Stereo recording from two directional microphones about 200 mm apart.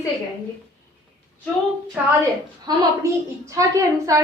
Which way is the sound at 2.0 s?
10° right (ahead or behind).